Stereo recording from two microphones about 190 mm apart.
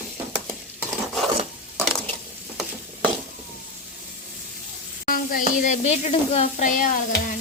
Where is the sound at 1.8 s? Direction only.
5° left (ahead or behind).